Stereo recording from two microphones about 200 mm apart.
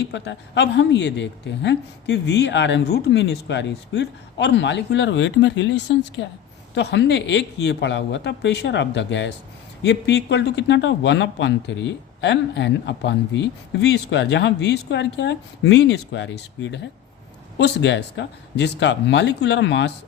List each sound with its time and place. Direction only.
0.1 s speech: 65° left (ahead or behind)